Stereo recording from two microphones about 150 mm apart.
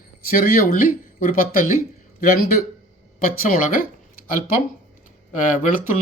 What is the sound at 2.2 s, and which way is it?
Speech, 80° left.